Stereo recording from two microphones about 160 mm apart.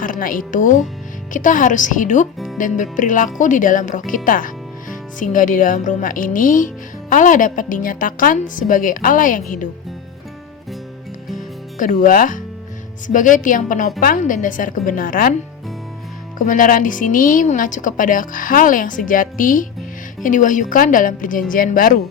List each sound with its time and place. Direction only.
0.0 s speech: 60° left (ahead or behind)
11.8 s speech: 55° left (ahead or behind)
16.4 s speech: 55° left (ahead or behind)